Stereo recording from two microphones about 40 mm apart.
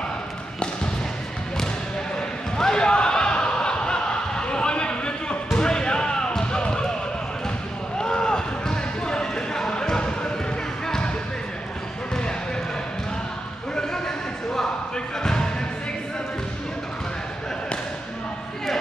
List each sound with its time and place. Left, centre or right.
2.1 s basketball bounce: centre
8.0 s basketball bounce: centre
13.7 s a sound: centre
15.2 s music: centre